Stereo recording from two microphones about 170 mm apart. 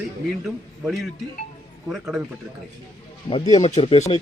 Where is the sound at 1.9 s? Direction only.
5° right (ahead or behind).